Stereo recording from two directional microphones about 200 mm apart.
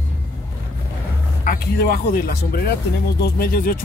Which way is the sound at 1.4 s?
50° left (ahead or behind).